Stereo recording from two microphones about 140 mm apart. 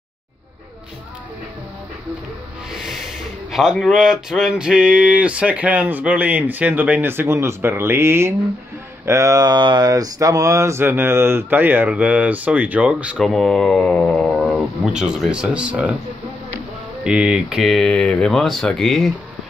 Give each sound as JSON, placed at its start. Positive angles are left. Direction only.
{"t": 2.7, "sound": "speech", "side_deg": -5}
{"t": 13.2, "sound": "speech", "side_deg": 0}
{"t": 17.0, "sound": "speech", "side_deg": -5}